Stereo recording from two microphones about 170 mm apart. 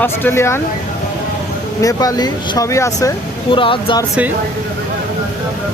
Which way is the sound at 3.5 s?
30° left (ahead or behind).